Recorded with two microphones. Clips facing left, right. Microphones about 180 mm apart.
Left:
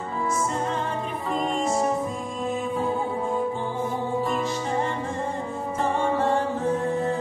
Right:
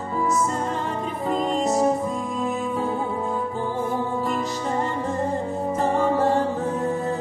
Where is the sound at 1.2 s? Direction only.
40° right (ahead or behind).